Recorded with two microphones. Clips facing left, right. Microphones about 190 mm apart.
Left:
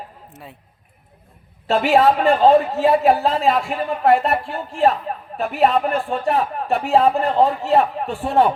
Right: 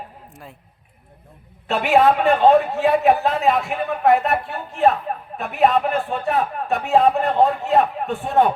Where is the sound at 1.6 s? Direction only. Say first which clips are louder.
Left 1 dB; 35° left (ahead or behind).